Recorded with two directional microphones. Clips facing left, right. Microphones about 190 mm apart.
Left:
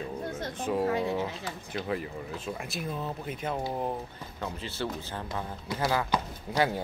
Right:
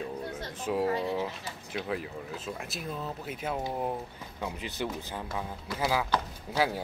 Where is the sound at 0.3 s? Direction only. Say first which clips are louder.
Left 4 dB; 45° left (ahead or behind).